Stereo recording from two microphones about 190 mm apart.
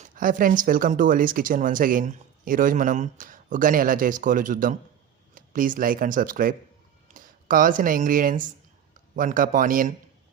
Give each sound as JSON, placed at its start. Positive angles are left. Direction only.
{"t": 0.0, "sound": "speech", "side_deg": -45}